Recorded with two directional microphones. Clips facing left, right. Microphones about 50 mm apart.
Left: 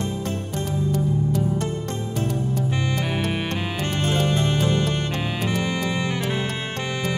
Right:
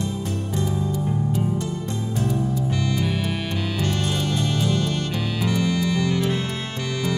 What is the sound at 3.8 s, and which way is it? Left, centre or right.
Music, left.